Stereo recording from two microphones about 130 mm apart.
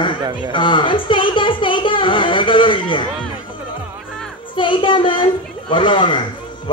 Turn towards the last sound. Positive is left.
turn(degrees=40)  # may be behind; listen again after turning